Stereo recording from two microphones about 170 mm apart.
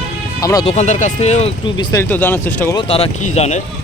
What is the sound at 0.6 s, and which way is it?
Speech, 40° left (ahead or behind).